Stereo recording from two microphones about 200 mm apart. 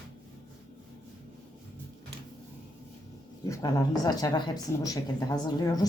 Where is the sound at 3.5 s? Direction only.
15° left (ahead or behind).